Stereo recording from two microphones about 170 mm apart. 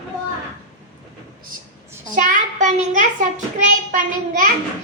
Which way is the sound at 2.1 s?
50° right (ahead or behind).